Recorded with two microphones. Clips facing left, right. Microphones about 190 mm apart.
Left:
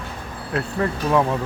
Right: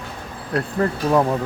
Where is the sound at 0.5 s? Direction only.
40° right (ahead or behind).